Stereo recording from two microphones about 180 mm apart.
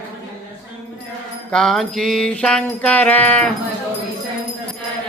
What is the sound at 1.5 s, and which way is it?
Music, 5° left (ahead or behind).